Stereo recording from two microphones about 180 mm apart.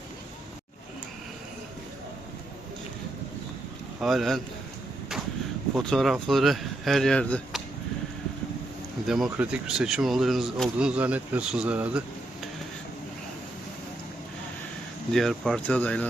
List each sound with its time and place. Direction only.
4.0 s speech: centre (ahead or behind)
5.7 s speech: centre (ahead or behind)
9.0 s speech: centre (ahead or behind)
15.1 s speech: centre (ahead or behind)